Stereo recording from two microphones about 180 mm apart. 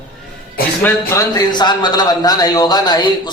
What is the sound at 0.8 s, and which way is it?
A man's voice, 15° left (ahead or behind).